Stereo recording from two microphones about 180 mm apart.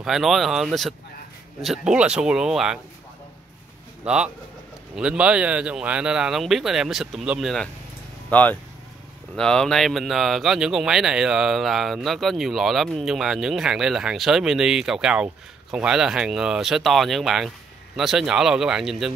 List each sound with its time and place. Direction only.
0.0 s speech: centre (ahead or behind)
4.0 s speech: 5° right (ahead or behind)